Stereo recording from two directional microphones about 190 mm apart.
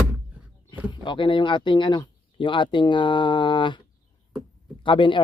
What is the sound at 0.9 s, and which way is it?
Speech, 25° left (ahead or behind).